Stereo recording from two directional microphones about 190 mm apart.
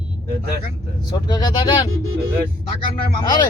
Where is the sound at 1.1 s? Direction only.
20° left (ahead or behind).